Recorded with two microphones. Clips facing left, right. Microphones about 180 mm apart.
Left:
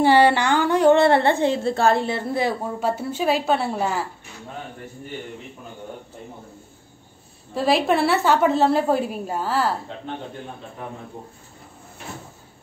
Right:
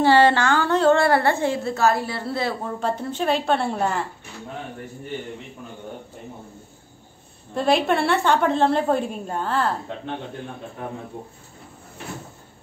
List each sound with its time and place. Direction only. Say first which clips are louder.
0.0 s a woman's voice: even; 15° left (ahead or behind)
7.5 s a woman's voice: left 1 dB; 5° left (ahead or behind)